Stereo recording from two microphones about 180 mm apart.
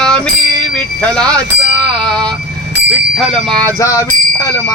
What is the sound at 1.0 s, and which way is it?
Speech, 5° left (ahead or behind).